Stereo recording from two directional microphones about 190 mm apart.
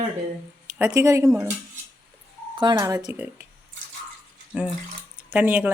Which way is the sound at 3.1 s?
10° right (ahead or behind).